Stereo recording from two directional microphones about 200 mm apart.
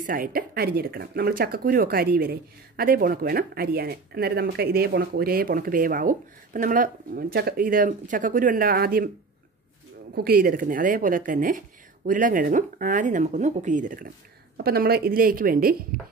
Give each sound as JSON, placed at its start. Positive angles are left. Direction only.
{"t": 0.0, "sound": "speech", "side_deg": -45}
{"t": 10.1, "sound": "speech", "side_deg": -50}
{"t": 14.6, "sound": "speech", "side_deg": -50}